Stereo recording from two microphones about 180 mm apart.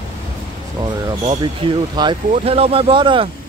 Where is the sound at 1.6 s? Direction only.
30° right (ahead or behind).